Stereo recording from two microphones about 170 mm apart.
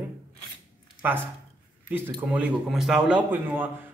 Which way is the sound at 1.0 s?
10° right (ahead or behind).